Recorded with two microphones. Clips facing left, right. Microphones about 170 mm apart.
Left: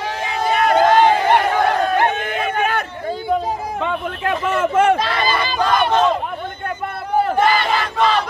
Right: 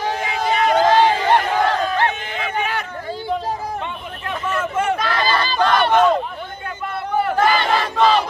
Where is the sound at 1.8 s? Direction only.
50° left (ahead or behind).